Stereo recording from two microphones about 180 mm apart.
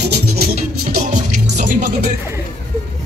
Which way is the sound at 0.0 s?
65° right (ahead or behind).